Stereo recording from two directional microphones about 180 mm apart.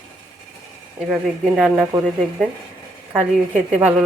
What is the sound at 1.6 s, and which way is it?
Speech, 5° right (ahead or behind).